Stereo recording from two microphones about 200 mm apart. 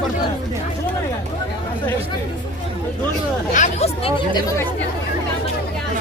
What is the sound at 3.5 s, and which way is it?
Speech, 35° left (ahead or behind).